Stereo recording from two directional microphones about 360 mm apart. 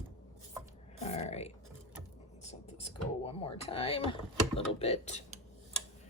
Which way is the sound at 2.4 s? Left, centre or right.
Centre.